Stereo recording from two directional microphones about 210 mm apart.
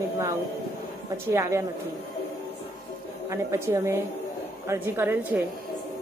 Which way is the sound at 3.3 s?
15° right (ahead or behind).